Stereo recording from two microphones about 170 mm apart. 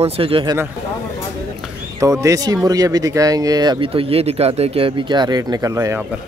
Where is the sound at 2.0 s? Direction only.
20° right (ahead or behind).